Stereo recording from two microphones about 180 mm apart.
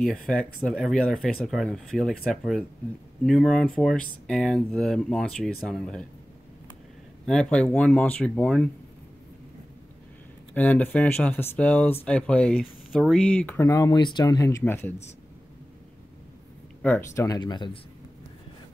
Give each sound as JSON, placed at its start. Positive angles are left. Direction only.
{"t": 0.0, "sound": "speech", "side_deg": 5}
{"t": 7.2, "sound": "speech", "side_deg": 5}
{"t": 10.5, "sound": "speech", "side_deg": 10}
{"t": 16.8, "sound": "speech", "side_deg": 10}